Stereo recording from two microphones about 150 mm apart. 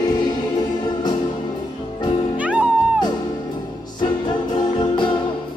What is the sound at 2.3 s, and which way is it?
Music, 10° right (ahead or behind).